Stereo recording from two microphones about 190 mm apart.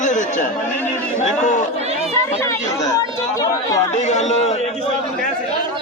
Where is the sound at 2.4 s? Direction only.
15° left (ahead or behind).